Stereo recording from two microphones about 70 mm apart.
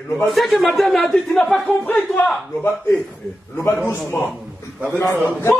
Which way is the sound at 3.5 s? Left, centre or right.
Left.